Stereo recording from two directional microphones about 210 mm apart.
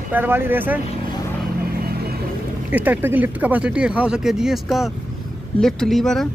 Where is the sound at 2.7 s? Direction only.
10° right (ahead or behind).